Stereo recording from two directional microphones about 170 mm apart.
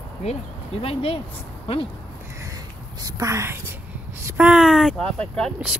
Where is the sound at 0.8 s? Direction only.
35° left (ahead or behind).